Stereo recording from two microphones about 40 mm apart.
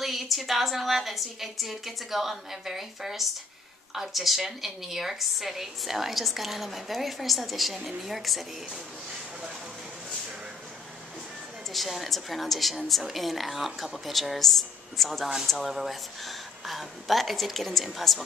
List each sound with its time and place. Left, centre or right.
0.0 s a woman's voice: centre
11.7 s a woman's voice: centre